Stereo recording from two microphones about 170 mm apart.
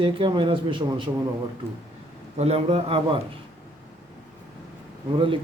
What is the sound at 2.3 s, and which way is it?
Speech, 35° right (ahead or behind).